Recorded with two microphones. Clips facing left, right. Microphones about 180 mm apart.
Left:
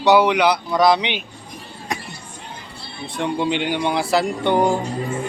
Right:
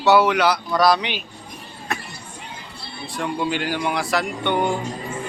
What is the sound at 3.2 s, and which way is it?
Speech, 20° left (ahead or behind).